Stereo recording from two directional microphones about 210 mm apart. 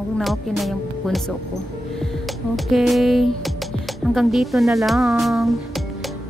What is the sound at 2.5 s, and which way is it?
Speech, centre (ahead or behind).